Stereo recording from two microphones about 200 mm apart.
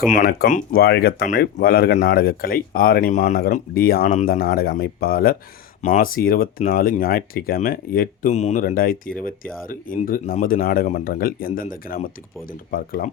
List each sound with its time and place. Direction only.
0.1 s speech: 50° left (ahead or behind)